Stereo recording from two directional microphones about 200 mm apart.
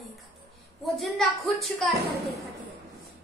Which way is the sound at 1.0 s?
Centre (ahead or behind).